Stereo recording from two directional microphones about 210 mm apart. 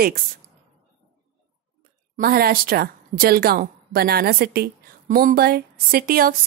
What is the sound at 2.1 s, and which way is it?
A woman's voice, 45° right (ahead or behind).